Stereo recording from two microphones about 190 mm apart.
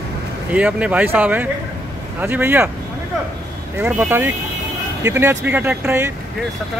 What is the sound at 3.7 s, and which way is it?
Speech, 10° right (ahead or behind).